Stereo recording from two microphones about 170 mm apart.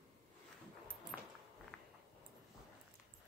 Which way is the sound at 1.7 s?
5° left (ahead or behind).